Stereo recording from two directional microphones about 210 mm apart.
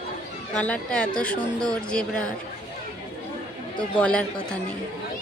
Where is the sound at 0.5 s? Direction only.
5° left (ahead or behind).